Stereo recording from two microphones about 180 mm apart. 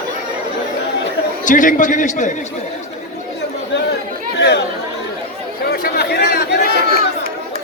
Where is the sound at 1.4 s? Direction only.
45° left (ahead or behind).